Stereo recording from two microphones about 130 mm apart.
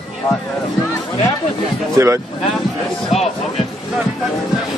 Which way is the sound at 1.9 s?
20° right (ahead or behind).